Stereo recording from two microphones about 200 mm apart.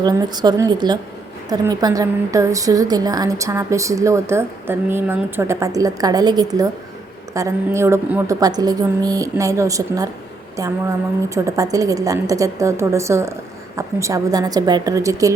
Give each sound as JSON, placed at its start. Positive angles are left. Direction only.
{"t": 0.0, "sound": "a woman's voice", "side_deg": -20}